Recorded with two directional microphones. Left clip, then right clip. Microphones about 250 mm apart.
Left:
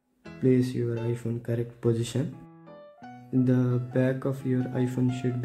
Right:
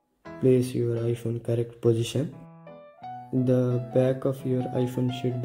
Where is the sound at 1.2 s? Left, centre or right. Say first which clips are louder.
Right 3 dB; centre.